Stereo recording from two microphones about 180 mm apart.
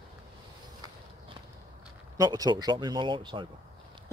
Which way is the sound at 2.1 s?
20° right (ahead or behind).